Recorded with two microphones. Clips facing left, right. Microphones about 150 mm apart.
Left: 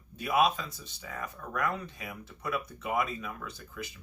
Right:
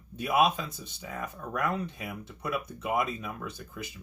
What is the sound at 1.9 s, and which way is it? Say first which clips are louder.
Speech: right 4 dB; 20° right (ahead or behind).